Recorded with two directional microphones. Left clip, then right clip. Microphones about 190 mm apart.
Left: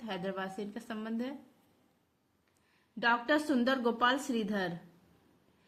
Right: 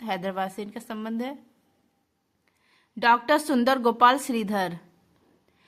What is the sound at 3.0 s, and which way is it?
A woman's voice, 40° right (ahead or behind).